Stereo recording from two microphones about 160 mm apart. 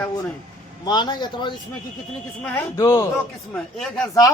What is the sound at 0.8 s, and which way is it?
Speech, 30° left (ahead or behind).